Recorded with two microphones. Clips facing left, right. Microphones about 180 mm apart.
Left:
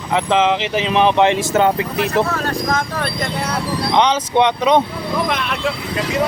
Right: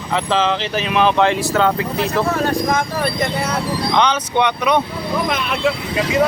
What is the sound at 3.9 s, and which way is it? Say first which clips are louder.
Speech: left 3 dB; 25° left (ahead or behind).